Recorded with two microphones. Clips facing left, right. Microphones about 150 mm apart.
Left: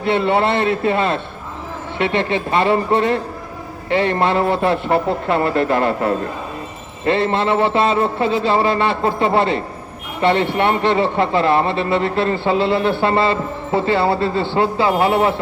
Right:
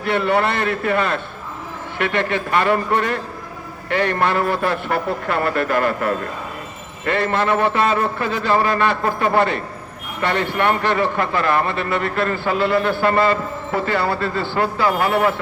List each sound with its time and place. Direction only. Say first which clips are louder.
0.0 s a man's voice: left 2 dB; 25° left (ahead or behind)